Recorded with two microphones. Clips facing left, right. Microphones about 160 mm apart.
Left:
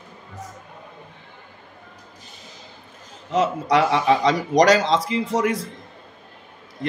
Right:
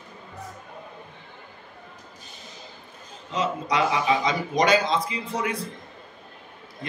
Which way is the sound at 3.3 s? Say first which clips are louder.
Left 6 dB; 80° left.